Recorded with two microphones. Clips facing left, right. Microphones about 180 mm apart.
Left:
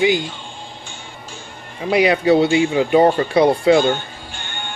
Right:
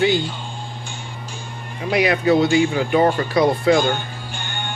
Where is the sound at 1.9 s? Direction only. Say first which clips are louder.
Left 3 dB; 30° left (ahead or behind).